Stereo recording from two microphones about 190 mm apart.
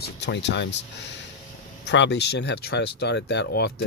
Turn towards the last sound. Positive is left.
turn(degrees=60)  # may be behind; listen again after turning